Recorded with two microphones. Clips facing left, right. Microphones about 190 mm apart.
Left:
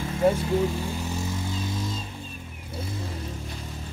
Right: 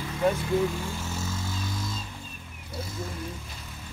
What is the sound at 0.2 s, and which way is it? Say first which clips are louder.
Vehicle: left 2 dB; 20° left (ahead or behind).